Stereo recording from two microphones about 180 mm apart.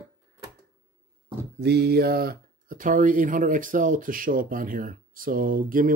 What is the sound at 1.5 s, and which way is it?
Speech, 65° right (ahead or behind).